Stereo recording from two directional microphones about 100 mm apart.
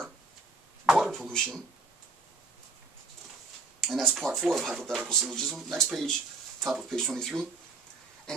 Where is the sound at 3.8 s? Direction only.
Centre (ahead or behind).